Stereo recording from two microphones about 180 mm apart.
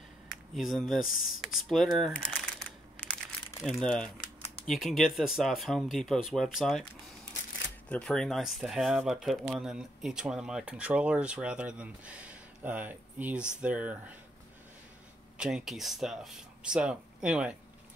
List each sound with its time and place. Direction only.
0.6 s speech: centre (ahead or behind)
3.0 s crumpling: 5° left (ahead or behind)
3.7 s speech: 5° left (ahead or behind)
7.9 s speech: 5° left (ahead or behind)
15.3 s speech: 5° right (ahead or behind)